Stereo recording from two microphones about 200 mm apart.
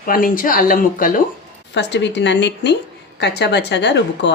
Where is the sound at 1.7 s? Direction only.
60° left (ahead or behind).